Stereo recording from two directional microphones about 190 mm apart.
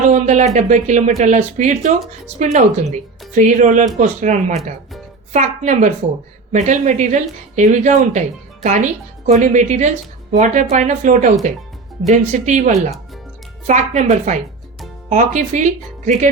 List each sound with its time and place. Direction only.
0.1 s speech: 40° right (ahead or behind)